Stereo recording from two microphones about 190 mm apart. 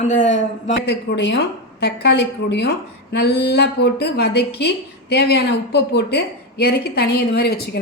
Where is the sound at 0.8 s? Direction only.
65° left (ahead or behind).